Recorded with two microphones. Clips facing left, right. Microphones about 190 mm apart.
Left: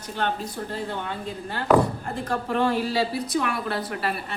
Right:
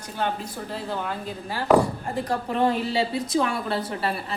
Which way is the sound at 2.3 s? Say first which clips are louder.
Even; 20° right (ahead or behind).